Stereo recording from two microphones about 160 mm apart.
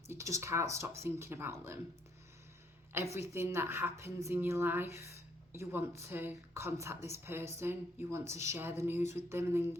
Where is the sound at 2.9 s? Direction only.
15° right (ahead or behind).